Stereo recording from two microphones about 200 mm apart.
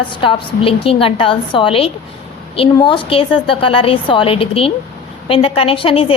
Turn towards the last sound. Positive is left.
turn(degrees=25)  # may be behind; listen again after turning